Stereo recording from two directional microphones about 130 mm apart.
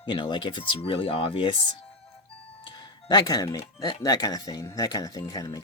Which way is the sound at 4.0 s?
30° left (ahead or behind).